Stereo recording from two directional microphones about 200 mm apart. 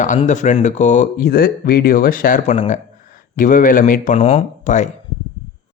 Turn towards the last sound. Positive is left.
turn(degrees=35)  # may be behind; listen again after turning